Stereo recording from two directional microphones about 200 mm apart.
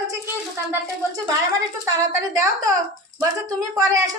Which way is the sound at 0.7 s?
15° right (ahead or behind).